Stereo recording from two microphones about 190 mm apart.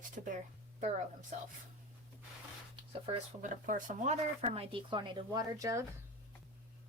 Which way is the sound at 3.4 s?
45° right (ahead or behind).